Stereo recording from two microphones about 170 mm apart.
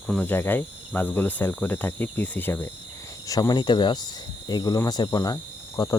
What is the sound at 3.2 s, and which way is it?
Speech, 20° left (ahead or behind).